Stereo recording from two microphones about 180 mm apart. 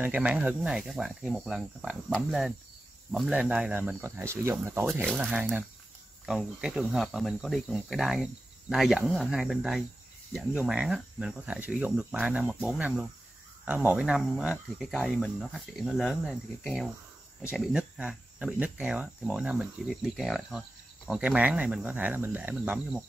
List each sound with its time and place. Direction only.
0.0 s cricket: 10° right (ahead or behind)
3.1 s speech: 5° right (ahead or behind)
5.0 s speech: 5° right (ahead or behind)
6.2 s cricket: centre (ahead or behind)
12.6 s speech: 5° right (ahead or behind)
13.7 s cricket: 10° right (ahead or behind)
21.1 s speech: 5° right (ahead or behind)